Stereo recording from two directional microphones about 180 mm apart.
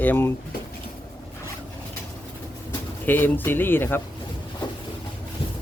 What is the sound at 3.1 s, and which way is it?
Speech, 10° left (ahead or behind).